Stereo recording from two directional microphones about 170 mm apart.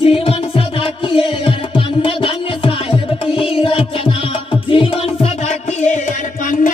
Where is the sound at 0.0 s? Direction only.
35° left (ahead or behind).